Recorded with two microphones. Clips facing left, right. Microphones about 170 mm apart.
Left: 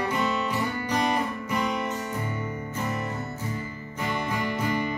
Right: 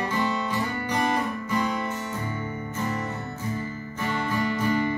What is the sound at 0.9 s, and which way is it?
Guitar, 15° left (ahead or behind).